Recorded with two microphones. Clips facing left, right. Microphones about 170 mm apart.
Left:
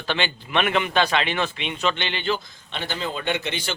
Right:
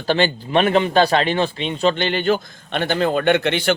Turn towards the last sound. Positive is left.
turn(degrees=-60)  # may be behind; listen again after turning